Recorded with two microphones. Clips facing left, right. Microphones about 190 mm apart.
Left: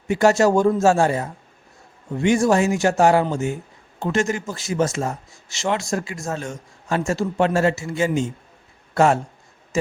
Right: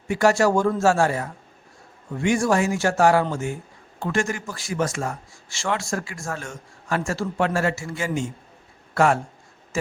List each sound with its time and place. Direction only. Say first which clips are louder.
0.1 s speech: left 3 dB; 20° left (ahead or behind)